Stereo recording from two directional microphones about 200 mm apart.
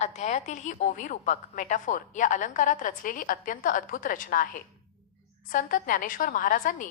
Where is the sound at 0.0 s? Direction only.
35° left (ahead or behind).